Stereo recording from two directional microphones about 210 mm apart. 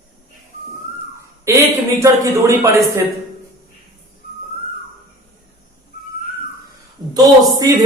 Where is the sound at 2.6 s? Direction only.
15° right (ahead or behind).